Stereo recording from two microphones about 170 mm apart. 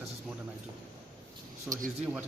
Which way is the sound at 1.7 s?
5° right (ahead or behind).